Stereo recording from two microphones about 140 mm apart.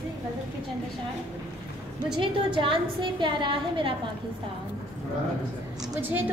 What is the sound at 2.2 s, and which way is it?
A woman's voice, 35° right (ahead or behind).